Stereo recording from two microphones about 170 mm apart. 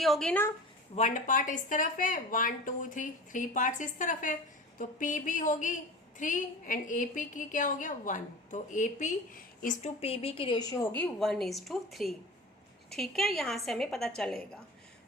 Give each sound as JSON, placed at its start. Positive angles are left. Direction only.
{"t": 0.0, "sound": "a woman's voice", "side_deg": 0}
{"t": 0.9, "sound": "a woman's voice", "side_deg": 45}
{"t": 10.0, "sound": "a woman's voice", "side_deg": 35}
{"t": 10.9, "sound": "a woman's voice", "side_deg": 5}